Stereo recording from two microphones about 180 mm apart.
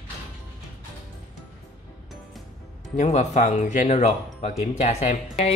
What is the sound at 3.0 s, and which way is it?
Speech, 40° left (ahead or behind).